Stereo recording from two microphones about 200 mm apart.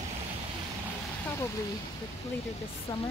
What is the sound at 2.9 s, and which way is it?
Speech, 20° left (ahead or behind).